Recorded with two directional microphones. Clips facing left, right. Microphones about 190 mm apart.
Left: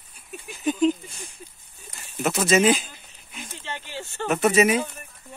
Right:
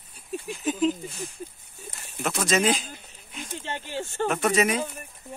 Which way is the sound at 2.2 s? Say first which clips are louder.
Left 4 dB; 5° left (ahead or behind).